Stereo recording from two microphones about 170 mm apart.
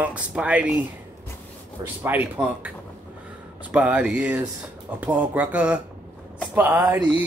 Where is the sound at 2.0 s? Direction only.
10° right (ahead or behind).